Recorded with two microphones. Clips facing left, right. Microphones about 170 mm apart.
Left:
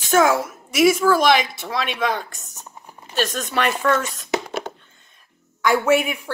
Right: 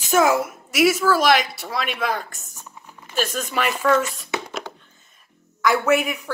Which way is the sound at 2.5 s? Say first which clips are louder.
Left 1 dB; 25° left (ahead or behind).